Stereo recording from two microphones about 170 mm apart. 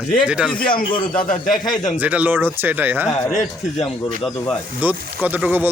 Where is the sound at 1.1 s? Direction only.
50° left (ahead or behind).